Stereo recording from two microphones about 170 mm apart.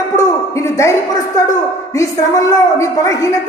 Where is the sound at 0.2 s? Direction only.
20° left (ahead or behind).